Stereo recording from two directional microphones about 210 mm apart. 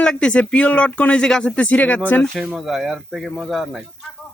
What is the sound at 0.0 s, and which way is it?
Speech, 5° left (ahead or behind).